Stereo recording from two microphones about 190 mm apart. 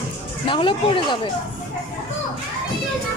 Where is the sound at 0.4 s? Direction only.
25° left (ahead or behind).